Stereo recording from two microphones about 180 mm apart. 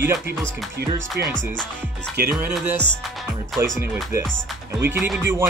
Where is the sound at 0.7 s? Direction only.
75° right (ahead or behind).